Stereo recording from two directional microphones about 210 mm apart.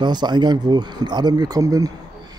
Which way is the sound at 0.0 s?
20° right (ahead or behind).